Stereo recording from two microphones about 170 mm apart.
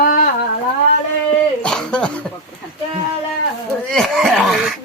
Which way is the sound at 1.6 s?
5° left (ahead or behind).